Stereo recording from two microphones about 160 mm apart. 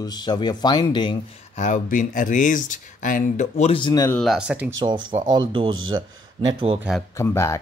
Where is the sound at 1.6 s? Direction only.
55° left (ahead or behind).